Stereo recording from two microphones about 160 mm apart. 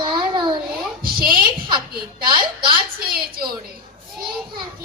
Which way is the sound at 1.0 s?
65° right (ahead or behind).